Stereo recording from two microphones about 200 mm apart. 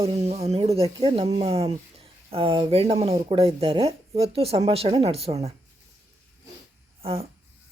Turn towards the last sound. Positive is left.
turn(degrees=-30)  # may be behind; listen again after turning